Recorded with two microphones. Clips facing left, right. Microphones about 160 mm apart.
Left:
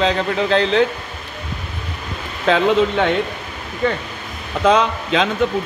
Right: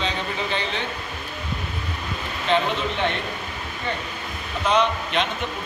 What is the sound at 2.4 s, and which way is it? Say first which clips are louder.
Speech: left 8 dB; 90° left.